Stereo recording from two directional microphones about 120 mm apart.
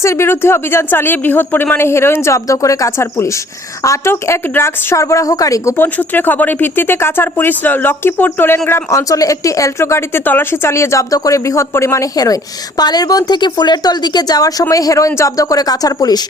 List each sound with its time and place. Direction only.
0.0 s a woman's voice: 20° left (ahead or behind)